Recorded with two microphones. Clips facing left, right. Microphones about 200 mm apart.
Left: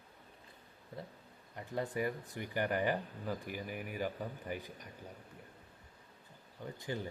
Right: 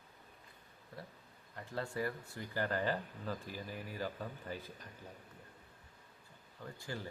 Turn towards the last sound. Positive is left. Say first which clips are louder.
# left 4 dB
turn(degrees=20)  # may be behind; listen again after turning